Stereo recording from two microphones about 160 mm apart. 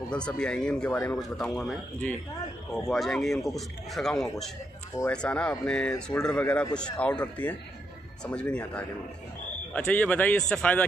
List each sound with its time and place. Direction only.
0.4 s speech: 5° left (ahead or behind)